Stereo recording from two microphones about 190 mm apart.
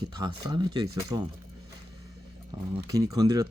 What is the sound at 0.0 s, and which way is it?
Speech, 20° right (ahead or behind).